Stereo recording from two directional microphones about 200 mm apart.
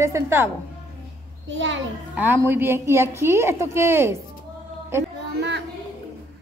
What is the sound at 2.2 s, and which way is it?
A woman's voice, 10° right (ahead or behind).